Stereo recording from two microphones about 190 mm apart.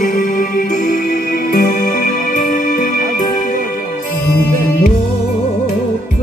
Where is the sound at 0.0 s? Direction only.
45° left (ahead or behind).